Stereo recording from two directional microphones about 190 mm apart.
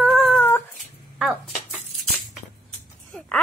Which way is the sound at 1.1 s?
5° right (ahead or behind).